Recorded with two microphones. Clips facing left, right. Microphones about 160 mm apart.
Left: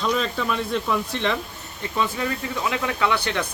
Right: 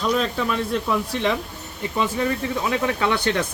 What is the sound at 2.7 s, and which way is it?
Speech, 35° right (ahead or behind).